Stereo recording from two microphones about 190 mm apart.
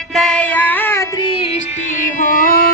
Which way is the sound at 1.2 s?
30° left (ahead or behind).